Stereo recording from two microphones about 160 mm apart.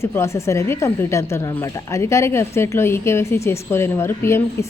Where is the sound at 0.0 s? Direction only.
15° left (ahead or behind).